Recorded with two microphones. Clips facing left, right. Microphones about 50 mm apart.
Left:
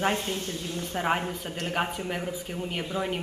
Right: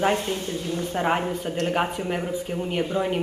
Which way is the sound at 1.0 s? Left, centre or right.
Centre.